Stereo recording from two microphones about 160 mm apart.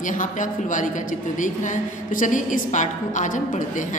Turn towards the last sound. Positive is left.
turn(degrees=50)  # may be behind; listen again after turning